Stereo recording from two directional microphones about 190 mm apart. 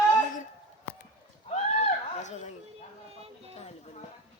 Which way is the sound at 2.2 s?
35° left (ahead or behind).